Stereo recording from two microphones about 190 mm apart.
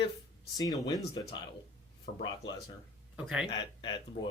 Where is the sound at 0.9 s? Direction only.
20° left (ahead or behind).